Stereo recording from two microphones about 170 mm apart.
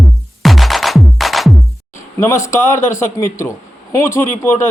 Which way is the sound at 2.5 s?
15° left (ahead or behind).